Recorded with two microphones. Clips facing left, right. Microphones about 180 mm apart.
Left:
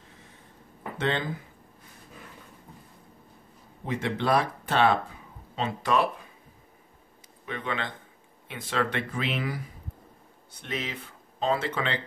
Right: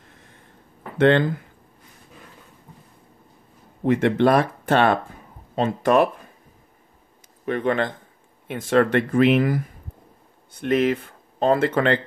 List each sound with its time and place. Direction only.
0.9 s speech: 55° right (ahead or behind)
3.8 s speech: 60° right (ahead or behind)
7.4 s speech: 55° right (ahead or behind)